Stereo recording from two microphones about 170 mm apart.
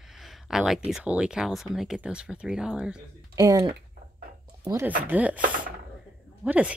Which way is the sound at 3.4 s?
20° right (ahead or behind).